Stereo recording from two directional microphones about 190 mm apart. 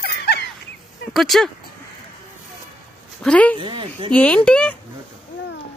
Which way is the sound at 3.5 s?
25° right (ahead or behind).